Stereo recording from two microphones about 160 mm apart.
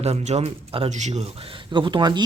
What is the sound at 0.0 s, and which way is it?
Speech, 40° right (ahead or behind).